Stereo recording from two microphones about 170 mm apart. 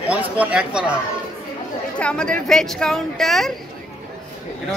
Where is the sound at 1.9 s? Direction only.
5° left (ahead or behind).